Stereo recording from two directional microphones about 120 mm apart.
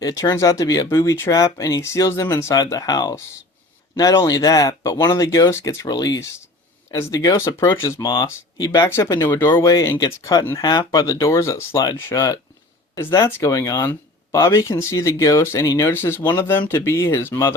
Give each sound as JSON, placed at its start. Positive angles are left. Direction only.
{"t": 0.0, "sound": "a man's voice", "side_deg": 30}
{"t": 5.8, "sound": "speech", "side_deg": 35}
{"t": 7.9, "sound": "speech", "side_deg": 40}